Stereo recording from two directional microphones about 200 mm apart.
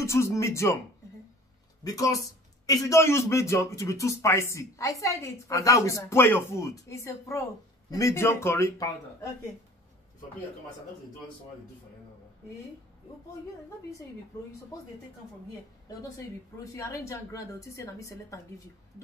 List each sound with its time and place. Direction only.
0.0 s a man's voice: 15° left (ahead or behind)
1.9 s a man's voice: 15° left (ahead or behind)
16.7 s a man's voice: 15° left (ahead or behind)